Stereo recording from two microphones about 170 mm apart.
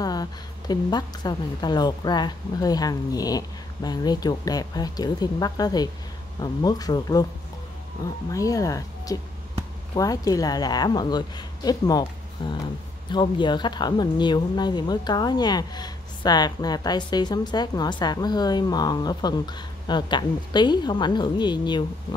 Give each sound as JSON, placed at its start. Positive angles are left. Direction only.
{"t": 0.0, "sound": "speech", "side_deg": 25}